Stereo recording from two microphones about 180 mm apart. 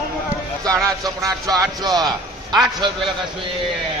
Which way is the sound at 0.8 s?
20° right (ahead or behind).